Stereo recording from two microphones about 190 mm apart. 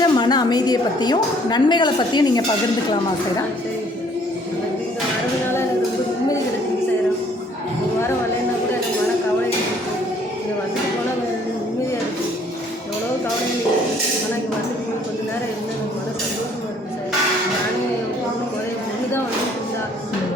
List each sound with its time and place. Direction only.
0.0 s a woman's voice: 20° left (ahead or behind)